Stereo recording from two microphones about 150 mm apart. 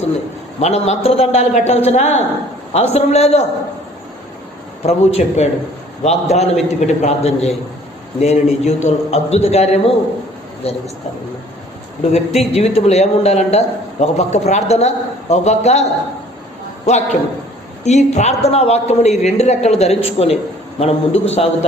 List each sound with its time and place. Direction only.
0.6 s a woman's voice: 45° left (ahead or behind)
4.8 s a woman's voice: 45° left (ahead or behind)
12.1 s a woman's voice: 45° left (ahead or behind)